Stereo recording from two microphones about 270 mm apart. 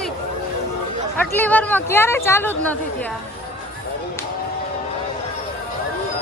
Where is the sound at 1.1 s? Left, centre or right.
Centre.